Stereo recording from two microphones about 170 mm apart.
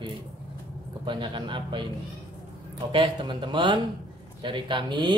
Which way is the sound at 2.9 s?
30° right (ahead or behind).